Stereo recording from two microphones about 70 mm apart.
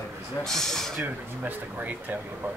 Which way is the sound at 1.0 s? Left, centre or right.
Right.